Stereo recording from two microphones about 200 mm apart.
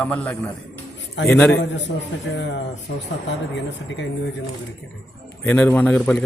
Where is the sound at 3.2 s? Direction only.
65° left (ahead or behind).